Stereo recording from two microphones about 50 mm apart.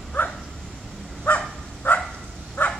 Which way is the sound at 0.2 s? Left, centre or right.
Left.